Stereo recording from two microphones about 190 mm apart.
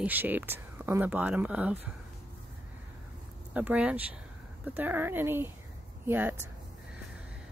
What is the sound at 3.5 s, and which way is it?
Speech, 5° right (ahead or behind).